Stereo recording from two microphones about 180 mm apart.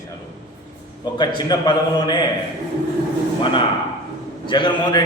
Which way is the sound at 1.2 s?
25° left (ahead or behind).